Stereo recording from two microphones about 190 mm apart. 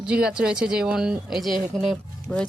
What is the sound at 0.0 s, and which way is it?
Speech, 5° right (ahead or behind).